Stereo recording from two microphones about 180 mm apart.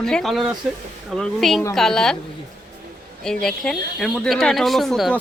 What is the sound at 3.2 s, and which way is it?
Speech, 5° left (ahead or behind).